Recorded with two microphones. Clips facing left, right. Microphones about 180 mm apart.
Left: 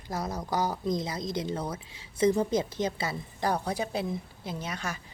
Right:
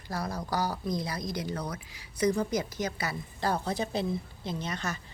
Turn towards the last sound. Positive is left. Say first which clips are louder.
# right 1 dB
turn(degrees=10)  # may be behind; listen again after turning